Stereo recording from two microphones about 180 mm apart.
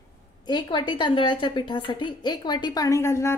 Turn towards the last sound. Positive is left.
turn(degrees=15)  # may be behind; listen again after turning